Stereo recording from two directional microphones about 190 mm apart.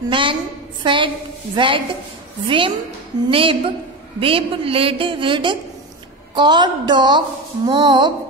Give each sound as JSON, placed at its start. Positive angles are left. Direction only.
{"t": 0.1, "sound": "a woman's voice", "side_deg": -25}